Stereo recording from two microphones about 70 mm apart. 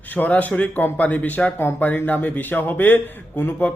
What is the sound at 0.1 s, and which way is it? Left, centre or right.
A man's voice, left.